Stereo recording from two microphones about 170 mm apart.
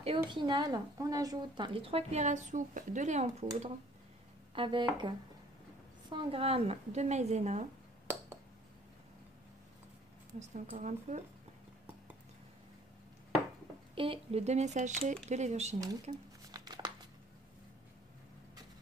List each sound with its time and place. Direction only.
0.0 s speech: 30° right (ahead or behind)
4.6 s speech: 30° right (ahead or behind)
10.5 s speech: 45° right (ahead or behind)
13.9 s speech: 30° right (ahead or behind)
16.5 s crumpling: 25° right (ahead or behind)